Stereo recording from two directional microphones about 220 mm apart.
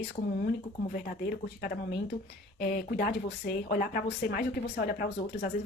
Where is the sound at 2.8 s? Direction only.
45° left (ahead or behind).